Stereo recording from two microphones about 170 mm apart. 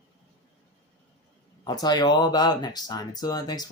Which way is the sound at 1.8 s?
25° left (ahead or behind).